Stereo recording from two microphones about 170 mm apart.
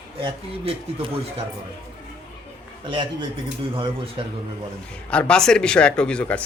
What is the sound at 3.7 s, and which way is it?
Speech, 30° right (ahead or behind).